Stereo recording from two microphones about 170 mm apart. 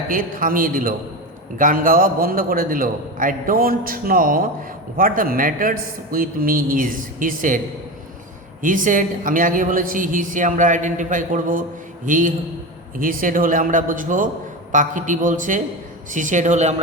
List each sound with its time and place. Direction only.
0.1 s a man's voice: 55° right (ahead or behind)
8.6 s a woman's voice: 50° right (ahead or behind)